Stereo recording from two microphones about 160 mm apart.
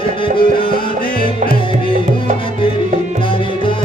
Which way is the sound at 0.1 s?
30° left (ahead or behind).